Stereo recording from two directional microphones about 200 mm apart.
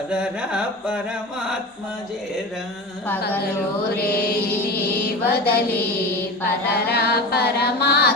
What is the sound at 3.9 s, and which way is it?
Music, 50° left (ahead or behind).